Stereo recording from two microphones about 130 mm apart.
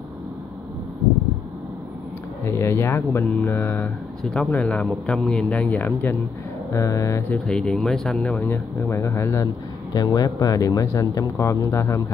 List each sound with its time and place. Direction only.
2.4 s speech: 20° left (ahead or behind)
6.7 s speech: 25° left (ahead or behind)
7.2 s speech: 10° left (ahead or behind)